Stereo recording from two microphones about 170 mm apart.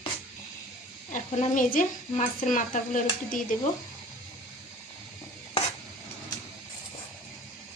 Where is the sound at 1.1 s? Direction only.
50° left (ahead or behind).